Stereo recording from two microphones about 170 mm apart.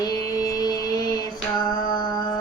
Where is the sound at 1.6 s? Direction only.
25° left (ahead or behind).